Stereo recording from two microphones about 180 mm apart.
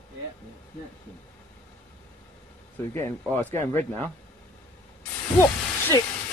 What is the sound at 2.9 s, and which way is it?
Speech, 10° left (ahead or behind).